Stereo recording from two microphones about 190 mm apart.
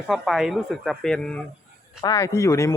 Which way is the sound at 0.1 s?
Centre (ahead or behind).